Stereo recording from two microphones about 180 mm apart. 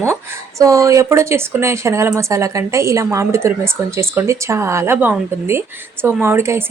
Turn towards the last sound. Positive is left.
turn(degrees=-15)  # may be behind; listen again after turning